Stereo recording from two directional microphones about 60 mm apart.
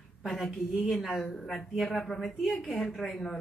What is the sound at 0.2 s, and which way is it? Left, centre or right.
Speech, centre.